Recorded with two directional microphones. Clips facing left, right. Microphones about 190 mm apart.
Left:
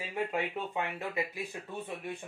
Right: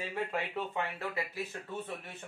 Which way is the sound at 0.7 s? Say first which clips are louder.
Left 1 dB; 15° left (ahead or behind).